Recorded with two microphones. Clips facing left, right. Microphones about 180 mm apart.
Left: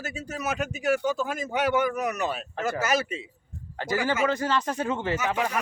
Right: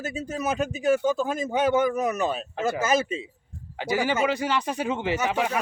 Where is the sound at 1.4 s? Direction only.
25° right (ahead or behind).